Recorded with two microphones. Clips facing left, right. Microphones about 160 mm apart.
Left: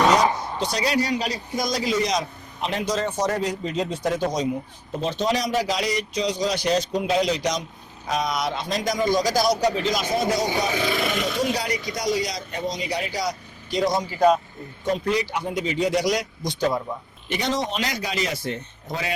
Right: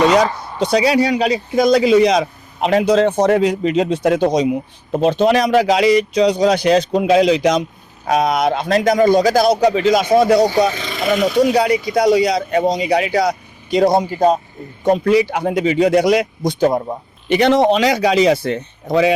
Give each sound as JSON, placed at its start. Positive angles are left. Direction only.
{"t": 0.6, "sound": "a man's voice", "side_deg": -65}
{"t": 10.8, "sound": "speech", "side_deg": 5}
{"t": 11.3, "sound": "a man's voice", "side_deg": -65}
{"t": 15.3, "sound": "a man's voice", "side_deg": -70}
{"t": 17.2, "sound": "speech", "side_deg": -65}